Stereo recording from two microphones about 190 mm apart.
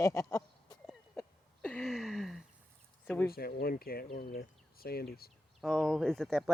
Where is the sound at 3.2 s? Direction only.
50° left (ahead or behind).